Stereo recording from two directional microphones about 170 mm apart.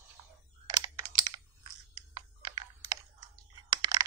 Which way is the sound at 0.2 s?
25° right (ahead or behind).